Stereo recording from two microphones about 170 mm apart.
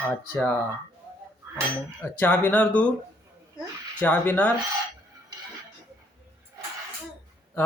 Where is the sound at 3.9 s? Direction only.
10° left (ahead or behind).